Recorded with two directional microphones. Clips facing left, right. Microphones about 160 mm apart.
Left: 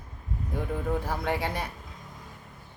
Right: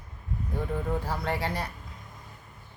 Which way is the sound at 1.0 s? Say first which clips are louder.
Left 1 dB; 15° left (ahead or behind).